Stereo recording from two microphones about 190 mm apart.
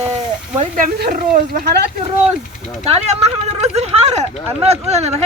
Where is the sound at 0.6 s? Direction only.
40° right (ahead or behind).